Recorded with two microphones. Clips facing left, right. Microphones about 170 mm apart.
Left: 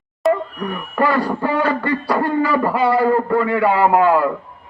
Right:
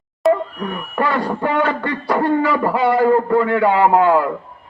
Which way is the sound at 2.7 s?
20° right (ahead or behind).